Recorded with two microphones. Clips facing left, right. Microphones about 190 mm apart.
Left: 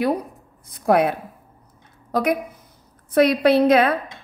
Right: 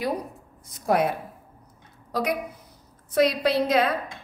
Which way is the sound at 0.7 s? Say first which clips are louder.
Left 5 dB; 60° left (ahead or behind).